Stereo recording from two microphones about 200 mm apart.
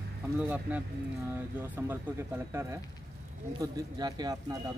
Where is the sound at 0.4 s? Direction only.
5° right (ahead or behind).